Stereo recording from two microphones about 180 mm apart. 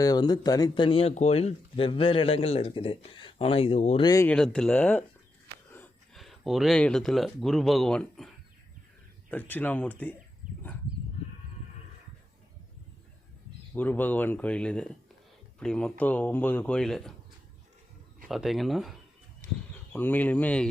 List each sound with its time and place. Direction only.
0.0 s speech: 20° left (ahead or behind)
4.0 s speech: 20° left (ahead or behind)
4.3 s speech: 5° left (ahead or behind)
6.1 s speech: centre (ahead or behind)
9.3 s speech: 10° left (ahead or behind)
13.7 s speech: 10° left (ahead or behind)
18.3 s speech: centre (ahead or behind)